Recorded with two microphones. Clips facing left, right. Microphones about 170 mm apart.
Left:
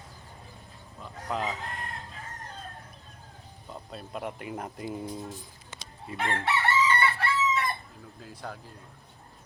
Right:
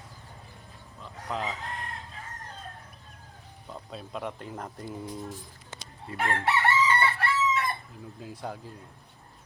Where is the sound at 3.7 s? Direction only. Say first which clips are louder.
Even; 5° left (ahead or behind).